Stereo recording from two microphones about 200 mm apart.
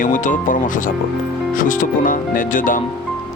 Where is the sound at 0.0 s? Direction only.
40° left (ahead or behind).